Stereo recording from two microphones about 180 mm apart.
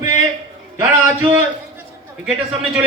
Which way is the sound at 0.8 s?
10° right (ahead or behind).